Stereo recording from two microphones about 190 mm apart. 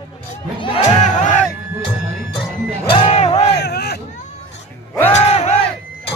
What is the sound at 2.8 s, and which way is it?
Music, 25° left (ahead or behind).